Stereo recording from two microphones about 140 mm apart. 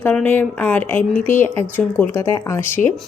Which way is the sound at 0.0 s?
10° left (ahead or behind).